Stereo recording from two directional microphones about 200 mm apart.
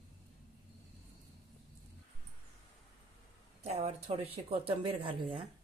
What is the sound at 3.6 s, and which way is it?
Speech, 30° right (ahead or behind).